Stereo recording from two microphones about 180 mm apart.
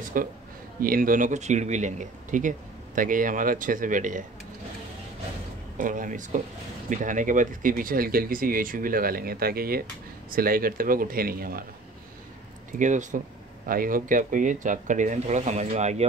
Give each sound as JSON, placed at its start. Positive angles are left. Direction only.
{"t": 0.2, "sound": "speech", "side_deg": -50}
{"t": 5.8, "sound": "speech", "side_deg": -50}
{"t": 12.7, "sound": "speech", "side_deg": -45}